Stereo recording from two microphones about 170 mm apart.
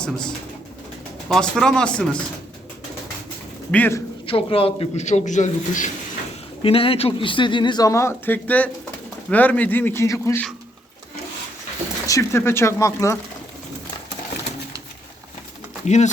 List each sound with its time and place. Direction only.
0.0 s speech: 5° left (ahead or behind)
3.7 s speech: 10° left (ahead or behind)
4.3 s a man's voice: 30° left (ahead or behind)
6.6 s speech: 35° left (ahead or behind); by 10.4 s 15° left (ahead or behind)
12.0 s speech: 15° left (ahead or behind)
15.9 s speech: 45° left (ahead or behind)